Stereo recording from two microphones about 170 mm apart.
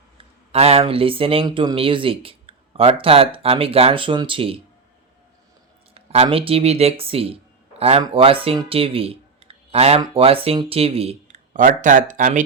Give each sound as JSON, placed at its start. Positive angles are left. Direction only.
{"t": 0.2, "sound": "speech", "side_deg": -35}
{"t": 5.9, "sound": "speech", "side_deg": -35}